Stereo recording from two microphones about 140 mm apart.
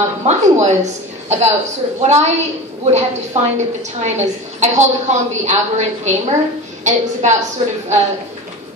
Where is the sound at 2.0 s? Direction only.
50° right (ahead or behind).